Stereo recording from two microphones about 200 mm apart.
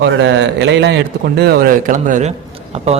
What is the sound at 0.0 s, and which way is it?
A man's voice, 65° right (ahead or behind).